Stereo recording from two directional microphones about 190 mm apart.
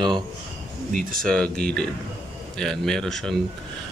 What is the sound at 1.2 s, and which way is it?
Speech, 5° left (ahead or behind).